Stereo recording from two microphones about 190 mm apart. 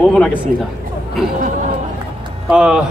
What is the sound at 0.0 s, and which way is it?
Speech, 5° left (ahead or behind).